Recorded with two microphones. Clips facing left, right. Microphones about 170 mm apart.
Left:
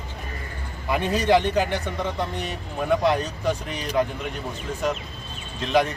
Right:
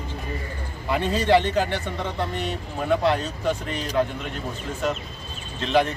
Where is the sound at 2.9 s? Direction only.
15° left (ahead or behind).